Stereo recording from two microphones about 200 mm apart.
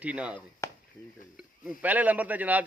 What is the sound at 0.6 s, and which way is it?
Chop, 15° left (ahead or behind).